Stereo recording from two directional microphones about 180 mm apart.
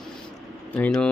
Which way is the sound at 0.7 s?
10° left (ahead or behind).